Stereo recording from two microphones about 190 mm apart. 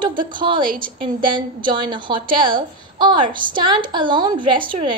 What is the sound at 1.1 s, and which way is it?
A woman's voice, 25° right (ahead or behind).